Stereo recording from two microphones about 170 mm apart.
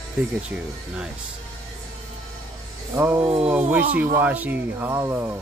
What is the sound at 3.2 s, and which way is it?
Speech, 35° right (ahead or behind).